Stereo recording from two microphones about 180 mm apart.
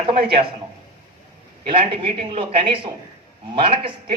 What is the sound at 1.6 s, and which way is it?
A man's voice, 30° right (ahead or behind).